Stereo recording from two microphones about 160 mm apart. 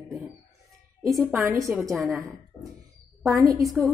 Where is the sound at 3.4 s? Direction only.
20° right (ahead or behind).